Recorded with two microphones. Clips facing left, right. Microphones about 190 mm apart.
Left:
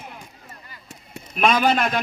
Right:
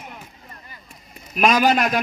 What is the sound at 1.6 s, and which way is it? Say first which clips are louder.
Speech: right 2 dB; 10° right (ahead or behind).